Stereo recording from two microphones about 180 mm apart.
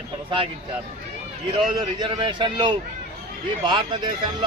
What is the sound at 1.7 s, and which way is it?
Speech, 25° right (ahead or behind).